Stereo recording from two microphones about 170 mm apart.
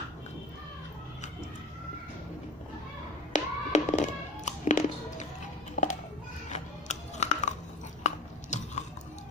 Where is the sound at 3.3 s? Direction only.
45° left (ahead or behind).